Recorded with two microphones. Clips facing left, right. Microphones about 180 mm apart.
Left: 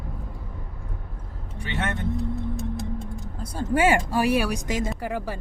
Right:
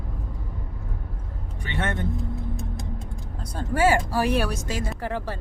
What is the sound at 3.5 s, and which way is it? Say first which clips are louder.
Speech: even; 20° left (ahead or behind).